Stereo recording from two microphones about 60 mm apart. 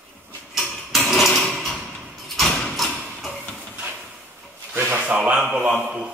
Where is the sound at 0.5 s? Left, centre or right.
Centre.